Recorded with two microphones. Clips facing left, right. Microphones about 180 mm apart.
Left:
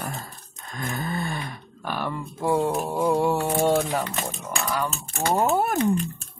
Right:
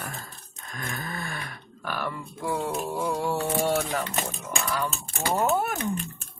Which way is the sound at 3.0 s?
25° left (ahead or behind).